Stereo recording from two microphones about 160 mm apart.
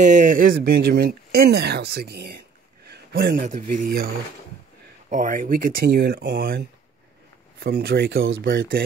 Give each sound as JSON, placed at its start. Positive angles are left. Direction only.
{"t": 0.0, "sound": "speech", "side_deg": -50}
{"t": 2.9, "sound": "a sound", "side_deg": -75}
{"t": 3.4, "sound": "speech", "side_deg": -50}
{"t": 5.1, "sound": "speech", "side_deg": -55}
{"t": 7.6, "sound": "speech", "side_deg": -80}